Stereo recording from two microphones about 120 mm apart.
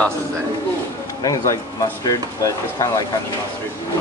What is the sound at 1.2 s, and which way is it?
Speech, 30° left (ahead or behind).